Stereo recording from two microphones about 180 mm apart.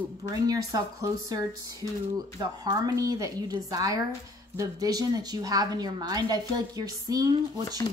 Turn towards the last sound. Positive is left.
turn(degrees=-20)  # may be behind; listen again after turning